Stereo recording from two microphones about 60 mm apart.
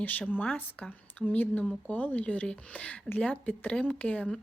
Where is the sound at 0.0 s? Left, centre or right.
Left.